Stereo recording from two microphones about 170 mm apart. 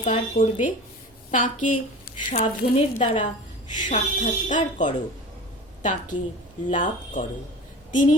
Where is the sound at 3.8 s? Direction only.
50° left (ahead or behind).